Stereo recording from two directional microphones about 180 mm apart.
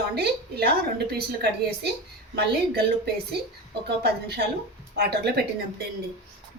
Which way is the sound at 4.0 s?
65° right (ahead or behind).